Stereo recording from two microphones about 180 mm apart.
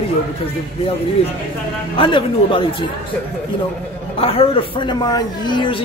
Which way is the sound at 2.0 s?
30° left (ahead or behind).